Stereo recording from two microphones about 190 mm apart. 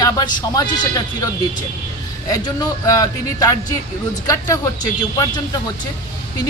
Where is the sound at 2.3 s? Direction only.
20° left (ahead or behind).